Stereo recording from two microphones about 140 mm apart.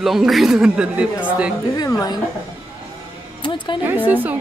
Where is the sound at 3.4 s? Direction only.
35° left (ahead or behind).